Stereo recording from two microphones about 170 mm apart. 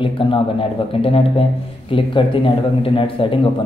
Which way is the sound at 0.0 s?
30° left (ahead or behind).